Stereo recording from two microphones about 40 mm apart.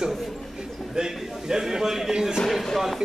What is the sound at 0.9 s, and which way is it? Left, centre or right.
A man's voice, centre.